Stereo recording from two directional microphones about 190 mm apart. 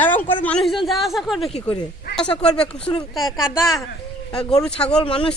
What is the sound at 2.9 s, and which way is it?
Speech, 20° left (ahead or behind).